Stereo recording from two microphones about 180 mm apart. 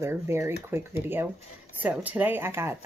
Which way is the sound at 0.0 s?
15° right (ahead or behind).